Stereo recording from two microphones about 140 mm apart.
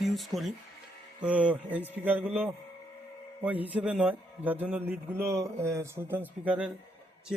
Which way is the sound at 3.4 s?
10° right (ahead or behind).